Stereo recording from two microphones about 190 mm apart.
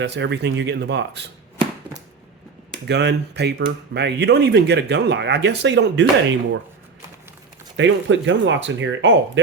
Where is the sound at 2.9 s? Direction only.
65° right (ahead or behind).